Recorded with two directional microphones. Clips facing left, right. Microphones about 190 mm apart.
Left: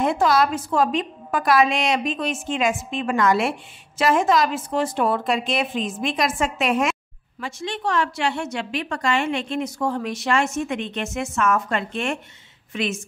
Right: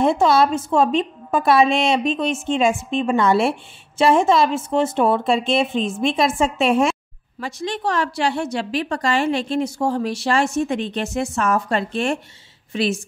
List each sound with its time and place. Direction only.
0.0 s a woman's voice: 25° right (ahead or behind)